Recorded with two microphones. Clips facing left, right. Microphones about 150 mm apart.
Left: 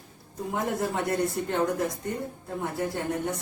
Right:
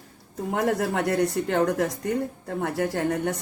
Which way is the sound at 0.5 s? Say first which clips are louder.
Right 4 dB; 75° right (ahead or behind).